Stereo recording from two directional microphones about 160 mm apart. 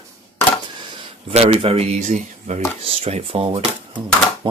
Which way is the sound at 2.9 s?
40° right (ahead or behind).